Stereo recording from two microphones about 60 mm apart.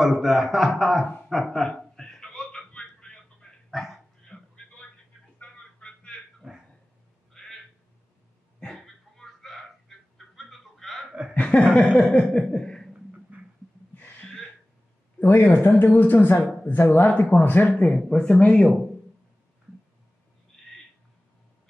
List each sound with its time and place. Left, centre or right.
0.0 s a man's voice: centre
1.3 s a sound: centre
3.7 s dog: centre
5.4 s a sound: centre
6.5 s dog: centre
7.3 s a sound: centre
11.3 s chuckle: left
11.7 s a woman's voice: left
12.0 s chuckle: centre
14.2 s a sound: centre
15.1 s speech: left
15.5 s a woman's voice: left
17.9 s speech: centre